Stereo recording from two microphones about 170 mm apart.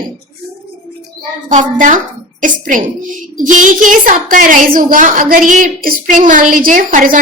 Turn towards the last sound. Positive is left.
turn(degrees=-50)  # may be behind; listen again after turning